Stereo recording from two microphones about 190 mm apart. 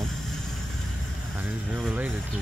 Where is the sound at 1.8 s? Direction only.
5° right (ahead or behind).